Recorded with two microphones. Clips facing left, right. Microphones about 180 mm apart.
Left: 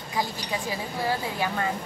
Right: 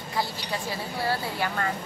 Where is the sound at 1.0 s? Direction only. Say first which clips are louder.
Left 1 dB; 15° left (ahead or behind).